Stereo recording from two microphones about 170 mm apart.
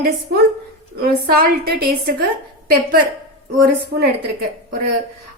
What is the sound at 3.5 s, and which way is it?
Speech, 65° right (ahead or behind).